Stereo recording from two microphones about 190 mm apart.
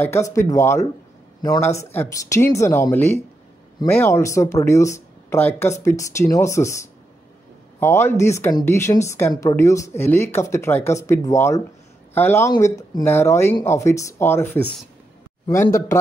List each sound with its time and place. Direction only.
0.0 s speech: 15° left (ahead or behind)